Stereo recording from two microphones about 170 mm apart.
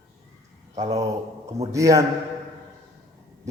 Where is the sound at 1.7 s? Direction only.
20° right (ahead or behind).